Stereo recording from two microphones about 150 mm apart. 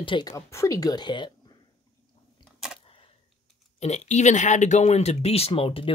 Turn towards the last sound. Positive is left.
turn(degrees=40)  # may be behind; listen again after turning